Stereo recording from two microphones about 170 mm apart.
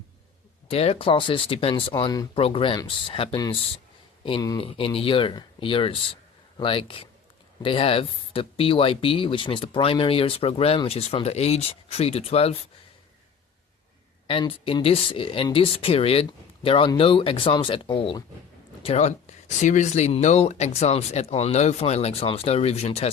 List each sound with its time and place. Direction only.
0.7 s speech: 35° left (ahead or behind)
1.9 s speech: 25° left (ahead or behind)
14.3 s speech: 30° left (ahead or behind)